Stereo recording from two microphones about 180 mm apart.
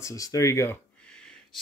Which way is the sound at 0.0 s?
20° left (ahead or behind).